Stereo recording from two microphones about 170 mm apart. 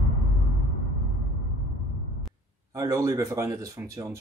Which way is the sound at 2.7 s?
20° right (ahead or behind).